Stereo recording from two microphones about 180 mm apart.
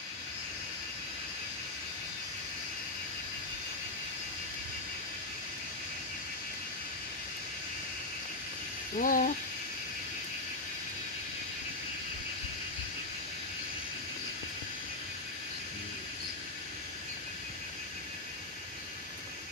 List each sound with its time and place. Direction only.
8.9 s speech: 50° left (ahead or behind)